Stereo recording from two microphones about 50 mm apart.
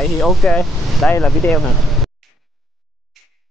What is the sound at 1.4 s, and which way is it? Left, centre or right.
Speech, left.